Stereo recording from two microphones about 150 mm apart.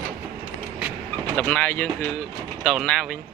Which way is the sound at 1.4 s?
10° left (ahead or behind).